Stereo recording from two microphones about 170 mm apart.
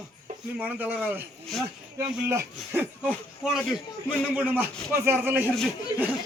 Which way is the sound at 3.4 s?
Centre (ahead or behind).